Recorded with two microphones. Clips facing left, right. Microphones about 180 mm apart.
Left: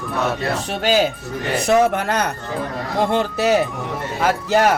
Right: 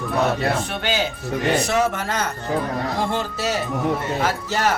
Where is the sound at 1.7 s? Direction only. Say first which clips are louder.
Left 5 dB; 60° left (ahead or behind).